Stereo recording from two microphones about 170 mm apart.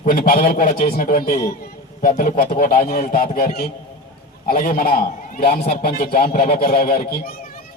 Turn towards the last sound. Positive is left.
turn(degrees=60)  # may be behind; listen again after turning